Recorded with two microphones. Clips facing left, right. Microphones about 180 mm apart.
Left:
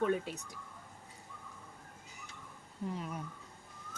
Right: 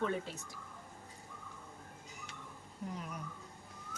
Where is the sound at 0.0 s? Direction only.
15° left (ahead or behind).